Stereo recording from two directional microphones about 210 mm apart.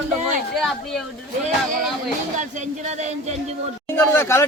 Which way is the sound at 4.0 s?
10° left (ahead or behind).